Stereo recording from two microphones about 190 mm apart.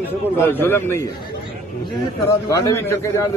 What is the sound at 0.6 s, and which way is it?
Speech, 15° left (ahead or behind).